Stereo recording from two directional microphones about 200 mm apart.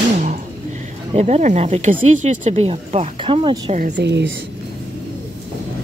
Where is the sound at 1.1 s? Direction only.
35° right (ahead or behind).